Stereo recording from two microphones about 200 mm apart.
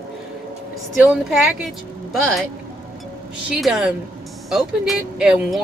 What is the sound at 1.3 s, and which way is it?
Speech, centre (ahead or behind).